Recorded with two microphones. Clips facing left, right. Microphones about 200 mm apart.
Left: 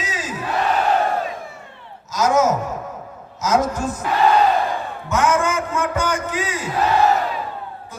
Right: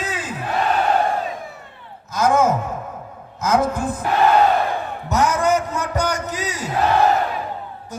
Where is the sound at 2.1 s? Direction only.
55° right (ahead or behind).